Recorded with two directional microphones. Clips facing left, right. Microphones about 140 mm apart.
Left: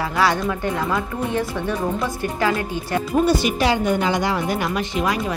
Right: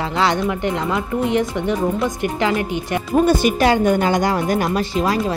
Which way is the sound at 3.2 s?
50° right (ahead or behind).